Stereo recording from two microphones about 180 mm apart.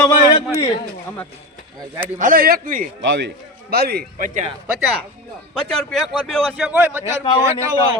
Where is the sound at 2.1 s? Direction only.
50° right (ahead or behind).